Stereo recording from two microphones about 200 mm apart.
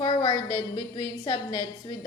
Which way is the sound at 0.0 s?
20° left (ahead or behind).